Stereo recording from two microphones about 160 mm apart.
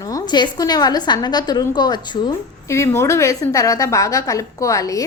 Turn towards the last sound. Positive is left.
turn(degrees=20)  # may be behind; listen again after turning